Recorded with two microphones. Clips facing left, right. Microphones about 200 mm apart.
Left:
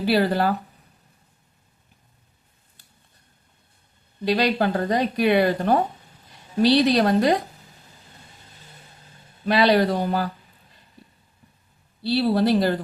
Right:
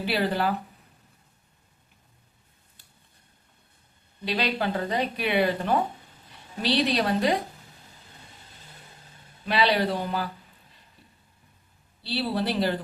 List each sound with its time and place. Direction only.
0.0 s speech: 40° left (ahead or behind)
4.3 s speech: 45° left (ahead or behind)
9.5 s speech: 45° left (ahead or behind)
12.0 s speech: 45° left (ahead or behind)